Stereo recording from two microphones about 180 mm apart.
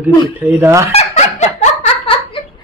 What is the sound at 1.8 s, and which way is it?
Laughter, 30° left (ahead or behind).